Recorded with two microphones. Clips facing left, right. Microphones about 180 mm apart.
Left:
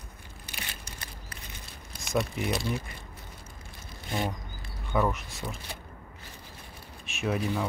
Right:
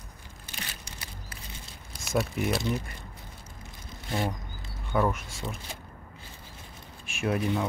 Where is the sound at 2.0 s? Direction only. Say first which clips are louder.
Right 1 dB; centre (ahead or behind).